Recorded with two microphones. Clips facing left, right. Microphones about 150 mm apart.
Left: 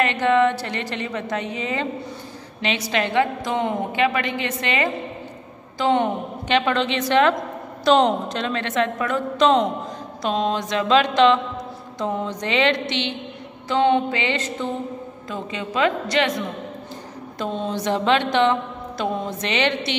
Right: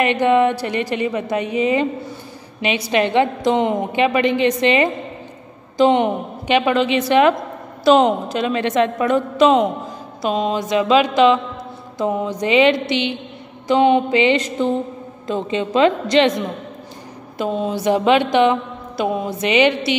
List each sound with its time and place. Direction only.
0.0 s mantra: 15° right (ahead or behind)
2.6 s a woman's voice: 15° right (ahead or behind)
5.8 s mantra: 20° right (ahead or behind)
9.4 s mantra: 10° right (ahead or behind)
15.2 s a woman's voice: 25° right (ahead or behind)
17.4 s mantra: 5° right (ahead or behind)